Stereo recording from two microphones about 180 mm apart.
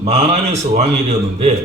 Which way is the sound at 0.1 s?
40° right (ahead or behind).